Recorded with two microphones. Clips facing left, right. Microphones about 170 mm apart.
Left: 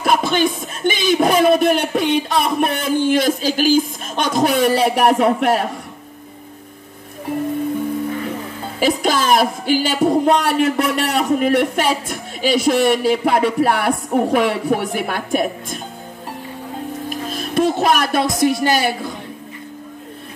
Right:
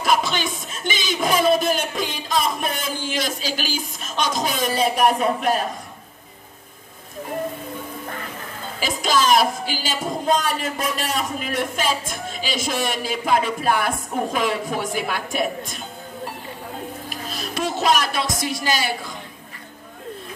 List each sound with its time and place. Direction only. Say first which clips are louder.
0.0 s speech: left 5 dB; 55° left (ahead or behind); by 5.7 s 75° left (ahead or behind)
8.7 s speech: left 5 dB; 60° left (ahead or behind)
17.3 s speech: left 8 dB; 55° left (ahead or behind)